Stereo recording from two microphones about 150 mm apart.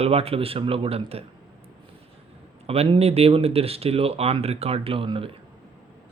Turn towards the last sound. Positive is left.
turn(degrees=-35)  # may be behind; listen again after turning